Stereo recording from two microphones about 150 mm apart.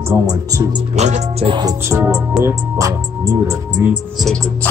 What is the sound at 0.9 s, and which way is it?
Music, 50° right (ahead or behind).